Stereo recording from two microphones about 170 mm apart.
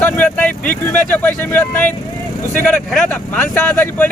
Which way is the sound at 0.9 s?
10° left (ahead or behind).